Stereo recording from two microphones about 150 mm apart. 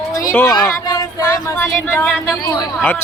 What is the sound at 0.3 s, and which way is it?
Speech, 20° left (ahead or behind).